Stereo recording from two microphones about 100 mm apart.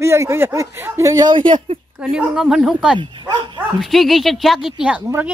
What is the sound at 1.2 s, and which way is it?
Speech, 55° right (ahead or behind).